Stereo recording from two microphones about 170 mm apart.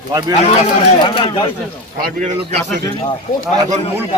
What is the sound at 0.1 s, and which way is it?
Speech, 25° right (ahead or behind).